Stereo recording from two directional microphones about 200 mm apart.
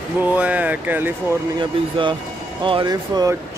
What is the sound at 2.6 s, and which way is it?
Speech, 25° right (ahead or behind).